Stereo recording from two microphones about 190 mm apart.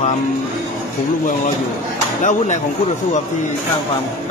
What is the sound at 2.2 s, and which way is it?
Speech, 40° left (ahead or behind).